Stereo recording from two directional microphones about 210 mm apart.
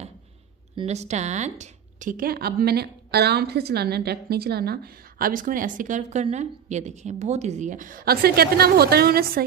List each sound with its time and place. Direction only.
0.7 s a woman's voice: 30° right (ahead or behind)